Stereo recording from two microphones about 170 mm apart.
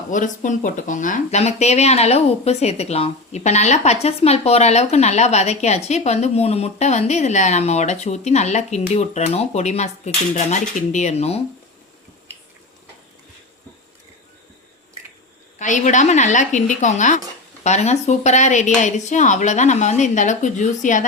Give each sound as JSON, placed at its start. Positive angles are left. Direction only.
{"t": 0.1, "sound": "speech", "side_deg": 50}
{"t": 15.5, "sound": "speech", "side_deg": 45}